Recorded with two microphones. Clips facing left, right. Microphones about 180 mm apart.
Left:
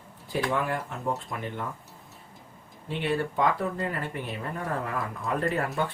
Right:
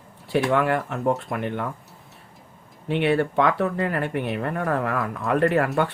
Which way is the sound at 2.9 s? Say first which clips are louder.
Right 7 dB; 65° right (ahead or behind).